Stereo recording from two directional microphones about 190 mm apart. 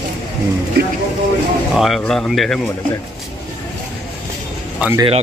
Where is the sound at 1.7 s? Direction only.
Centre (ahead or behind).